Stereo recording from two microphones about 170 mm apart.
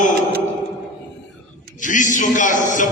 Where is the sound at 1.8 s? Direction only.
50° left (ahead or behind).